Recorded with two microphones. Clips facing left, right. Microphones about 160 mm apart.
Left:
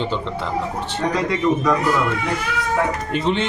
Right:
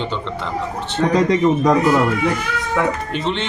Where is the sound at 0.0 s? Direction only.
5° left (ahead or behind).